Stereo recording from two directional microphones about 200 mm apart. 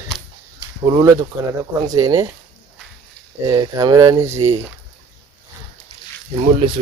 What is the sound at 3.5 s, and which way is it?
Speech, 20° right (ahead or behind).